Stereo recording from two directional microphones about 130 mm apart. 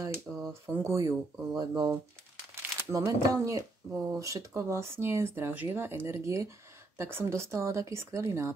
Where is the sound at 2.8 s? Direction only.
20° right (ahead or behind).